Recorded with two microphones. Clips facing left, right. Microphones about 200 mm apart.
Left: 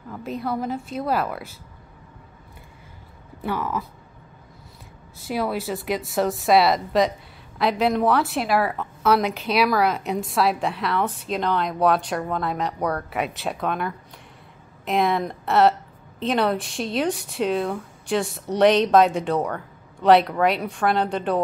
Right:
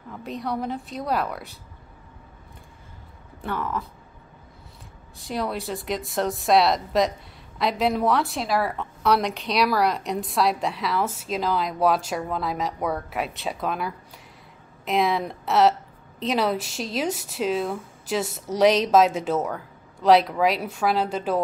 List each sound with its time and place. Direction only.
0.1 s a woman's voice: centre (ahead or behind)
3.4 s speech: 10° left (ahead or behind)
5.2 s a woman's voice: 5° left (ahead or behind)